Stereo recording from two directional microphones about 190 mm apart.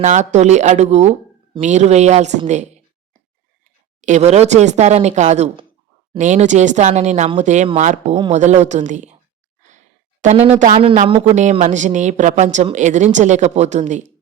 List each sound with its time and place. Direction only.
0.0 s speech: 40° right (ahead or behind)
4.0 s speech: 35° right (ahead or behind)
9.6 s a sound: 40° right (ahead or behind)
11.1 s speech: 35° right (ahead or behind)